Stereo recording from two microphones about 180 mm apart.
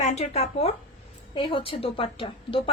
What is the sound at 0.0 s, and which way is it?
A woman's voice, 40° left (ahead or behind).